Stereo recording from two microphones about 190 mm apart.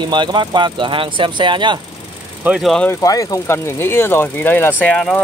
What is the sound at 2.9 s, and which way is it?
Speech, 20° left (ahead or behind).